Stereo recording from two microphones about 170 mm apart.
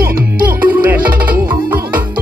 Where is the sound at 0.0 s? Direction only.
60° right (ahead or behind).